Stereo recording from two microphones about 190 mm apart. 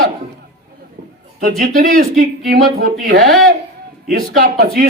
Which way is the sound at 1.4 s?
50° right (ahead or behind).